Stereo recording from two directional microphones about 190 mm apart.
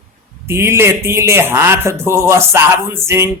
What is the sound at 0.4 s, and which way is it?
Speech, 15° right (ahead or behind).